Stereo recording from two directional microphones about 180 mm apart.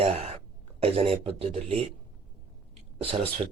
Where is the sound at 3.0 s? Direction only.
30° right (ahead or behind).